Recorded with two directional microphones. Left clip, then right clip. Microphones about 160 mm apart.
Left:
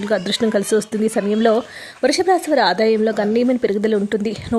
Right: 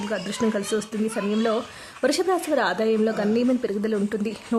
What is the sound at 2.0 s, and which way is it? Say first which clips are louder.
A woman's voice: left 6 dB; 25° left (ahead or behind).